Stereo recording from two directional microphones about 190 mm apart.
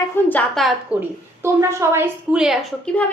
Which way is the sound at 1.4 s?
15° right (ahead or behind).